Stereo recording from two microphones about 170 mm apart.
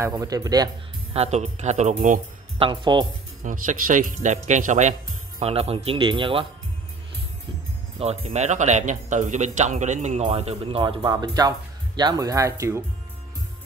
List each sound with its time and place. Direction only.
0.0 s speech: 20° right (ahead or behind)
1.1 s speech: 40° right (ahead or behind)
2.6 s speech: 25° right (ahead or behind)
3.4 s speech: 50° right (ahead or behind)
5.4 s speech: 35° right (ahead or behind)
8.0 s speech: 40° right (ahead or behind); by 12.8 s 15° right (ahead or behind)